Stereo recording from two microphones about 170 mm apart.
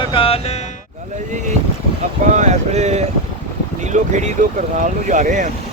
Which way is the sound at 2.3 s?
45° right (ahead or behind).